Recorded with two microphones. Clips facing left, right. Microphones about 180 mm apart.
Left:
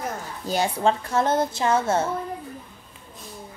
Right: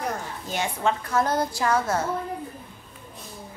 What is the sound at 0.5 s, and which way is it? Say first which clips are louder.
A woman's voice: left 4 dB; 35° left (ahead or behind).